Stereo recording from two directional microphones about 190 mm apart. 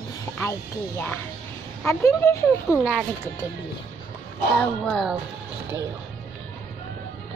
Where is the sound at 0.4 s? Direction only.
15° left (ahead or behind).